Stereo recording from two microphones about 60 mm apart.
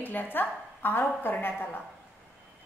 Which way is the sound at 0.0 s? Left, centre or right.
Left.